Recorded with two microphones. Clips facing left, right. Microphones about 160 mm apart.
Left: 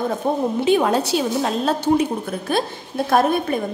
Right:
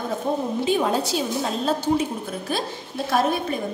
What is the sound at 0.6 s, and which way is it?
A woman's voice, 70° left (ahead or behind).